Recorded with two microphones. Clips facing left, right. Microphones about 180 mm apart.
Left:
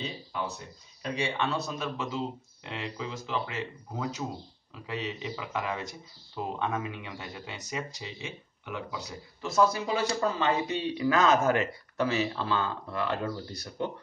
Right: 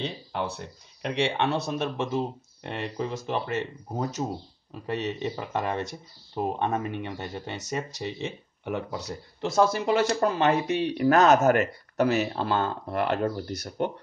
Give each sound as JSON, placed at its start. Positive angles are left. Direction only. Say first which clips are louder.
{"t": 0.0, "sound": "speech", "louder": "right 4 dB", "side_deg": -65}
{"t": 3.9, "sound": "speech", "louder": "right 5 dB", "side_deg": -45}
{"t": 4.8, "sound": "speech", "louder": "right 6 dB", "side_deg": -60}
{"t": 7.5, "sound": "speech", "louder": "right 3 dB", "side_deg": -60}
{"t": 11.6, "sound": "speech", "louder": "right 5 dB", "side_deg": -45}
{"t": 13.5, "sound": "speech", "louder": "right 6 dB", "side_deg": -75}